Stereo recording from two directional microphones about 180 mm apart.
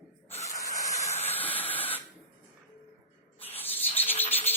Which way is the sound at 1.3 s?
10° left (ahead or behind).